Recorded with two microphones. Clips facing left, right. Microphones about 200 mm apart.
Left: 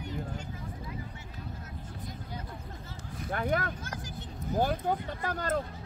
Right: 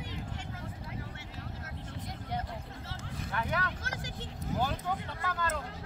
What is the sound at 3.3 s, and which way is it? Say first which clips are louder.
Speech: left 4 dB; 45° left (ahead or behind).